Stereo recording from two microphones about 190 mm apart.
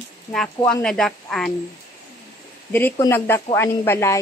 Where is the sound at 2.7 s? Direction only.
10° left (ahead or behind).